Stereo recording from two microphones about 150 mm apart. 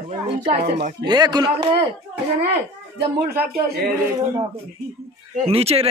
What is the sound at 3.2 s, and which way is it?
Speech, 90° right.